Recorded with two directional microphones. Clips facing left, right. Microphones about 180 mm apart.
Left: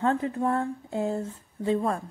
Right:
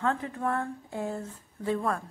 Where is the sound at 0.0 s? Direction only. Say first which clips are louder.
Left 4 dB; 30° left (ahead or behind).